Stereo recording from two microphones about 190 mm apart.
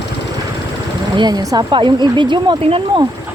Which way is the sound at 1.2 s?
20° right (ahead or behind).